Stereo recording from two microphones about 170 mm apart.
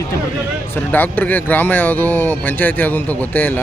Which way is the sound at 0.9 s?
10° left (ahead or behind).